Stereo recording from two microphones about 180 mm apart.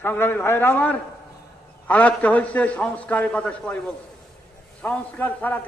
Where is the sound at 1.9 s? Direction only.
10° left (ahead or behind).